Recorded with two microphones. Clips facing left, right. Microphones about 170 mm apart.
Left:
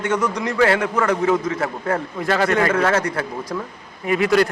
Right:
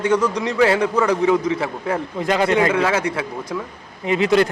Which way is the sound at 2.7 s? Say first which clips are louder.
Even; 5° right (ahead or behind).